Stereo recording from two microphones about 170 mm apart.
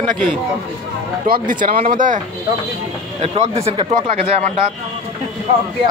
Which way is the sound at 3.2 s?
35° right (ahead or behind).